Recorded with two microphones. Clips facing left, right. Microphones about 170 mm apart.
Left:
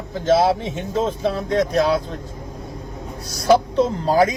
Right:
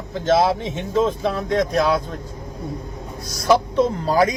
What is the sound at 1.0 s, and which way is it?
Speech, 30° left (ahead or behind).